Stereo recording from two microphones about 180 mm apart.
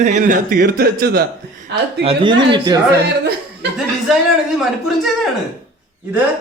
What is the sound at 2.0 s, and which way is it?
Speech, 25° right (ahead or behind).